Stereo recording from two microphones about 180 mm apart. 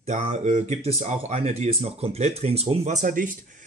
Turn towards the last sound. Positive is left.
turn(degrees=-45)  # may be behind; listen again after turning